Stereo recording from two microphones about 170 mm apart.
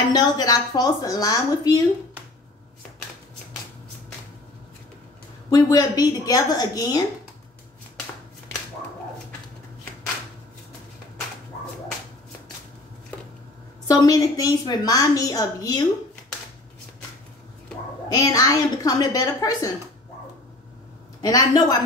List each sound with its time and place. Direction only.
0.1 s a woman's voice: 20° left (ahead or behind)
5.5 s a woman's voice: 20° left (ahead or behind)
13.8 s a woman's voice: 20° left (ahead or behind)
18.0 s a woman's voice: 20° left (ahead or behind)
21.2 s a woman's voice: 20° left (ahead or behind)